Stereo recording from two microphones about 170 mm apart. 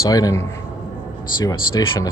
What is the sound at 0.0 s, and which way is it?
Speech, 20° left (ahead or behind).